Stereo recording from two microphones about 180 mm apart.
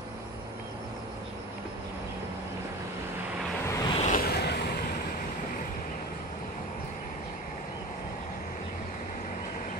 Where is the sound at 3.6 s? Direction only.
20° left (ahead or behind).